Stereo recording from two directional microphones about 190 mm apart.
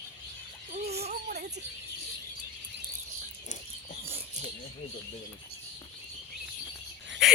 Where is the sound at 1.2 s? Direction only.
60° right (ahead or behind).